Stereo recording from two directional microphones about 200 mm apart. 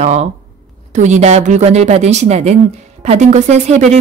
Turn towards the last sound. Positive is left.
turn(degrees=-35)  # may be behind; listen again after turning